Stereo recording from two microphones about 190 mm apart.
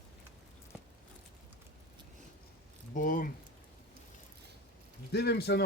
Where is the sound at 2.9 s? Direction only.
45° left (ahead or behind).